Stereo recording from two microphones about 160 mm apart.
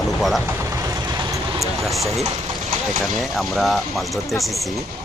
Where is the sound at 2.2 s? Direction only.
45° right (ahead or behind).